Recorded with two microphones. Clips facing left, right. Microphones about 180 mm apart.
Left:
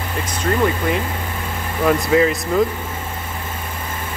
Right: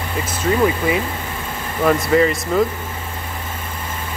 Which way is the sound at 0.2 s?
5° right (ahead or behind).